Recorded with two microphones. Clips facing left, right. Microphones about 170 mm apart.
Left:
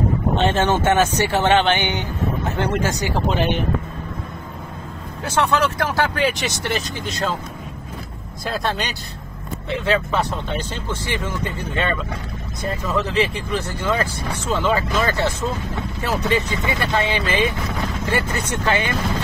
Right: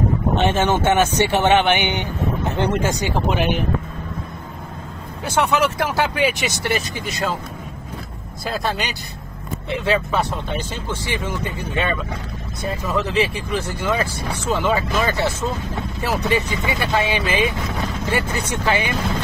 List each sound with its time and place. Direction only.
0.4 s speech: 15° right (ahead or behind)
1.4 s speech: 15° right (ahead or behind)
5.2 s speech: 15° right (ahead or behind)
8.5 s speech: 5° right (ahead or behind)